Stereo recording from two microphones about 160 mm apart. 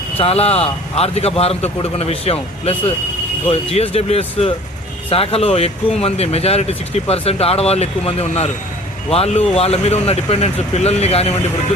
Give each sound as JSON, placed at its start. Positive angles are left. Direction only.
{"t": 0.2, "sound": "speech", "side_deg": 40}